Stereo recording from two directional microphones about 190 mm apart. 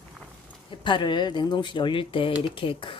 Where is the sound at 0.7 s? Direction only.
25° left (ahead or behind).